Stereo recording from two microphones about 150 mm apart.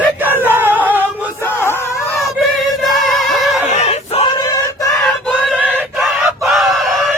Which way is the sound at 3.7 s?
45° left (ahead or behind).